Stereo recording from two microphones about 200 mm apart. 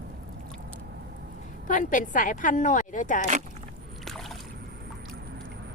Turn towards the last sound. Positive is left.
turn(degrees=0)  # may be behind; listen again after turning